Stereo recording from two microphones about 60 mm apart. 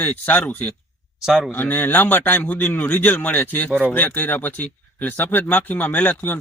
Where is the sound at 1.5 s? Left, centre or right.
Left.